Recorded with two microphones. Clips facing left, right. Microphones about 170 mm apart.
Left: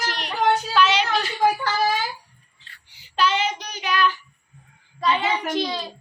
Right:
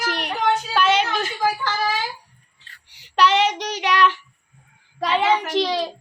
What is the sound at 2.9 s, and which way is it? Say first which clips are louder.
Child singing: right 4 dB; 75° right (ahead or behind).